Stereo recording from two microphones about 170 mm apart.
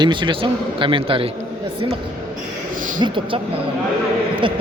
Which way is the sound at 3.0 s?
30° right (ahead or behind).